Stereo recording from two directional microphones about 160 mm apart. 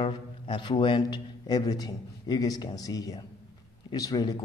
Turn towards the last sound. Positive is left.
turn(degrees=20)  # may be behind; listen again after turning